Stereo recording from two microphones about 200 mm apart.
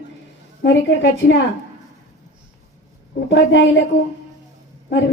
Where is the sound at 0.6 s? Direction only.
60° left (ahead or behind).